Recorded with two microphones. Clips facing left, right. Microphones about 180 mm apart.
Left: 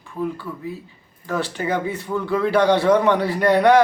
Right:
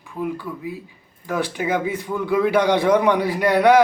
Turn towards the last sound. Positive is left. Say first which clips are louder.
# even
turn(degrees=-10)  # may be behind; listen again after turning